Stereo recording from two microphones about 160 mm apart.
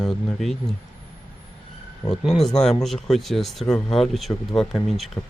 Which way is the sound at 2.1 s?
Centre (ahead or behind).